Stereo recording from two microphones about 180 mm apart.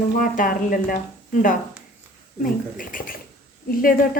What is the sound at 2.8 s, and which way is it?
Speech, 50° left (ahead or behind).